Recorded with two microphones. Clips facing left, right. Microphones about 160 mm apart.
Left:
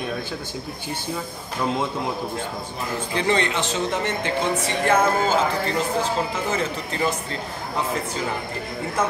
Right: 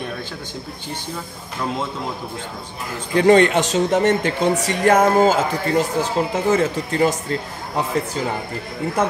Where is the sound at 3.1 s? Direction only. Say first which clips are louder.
Right 10 dB; 50° right (ahead or behind).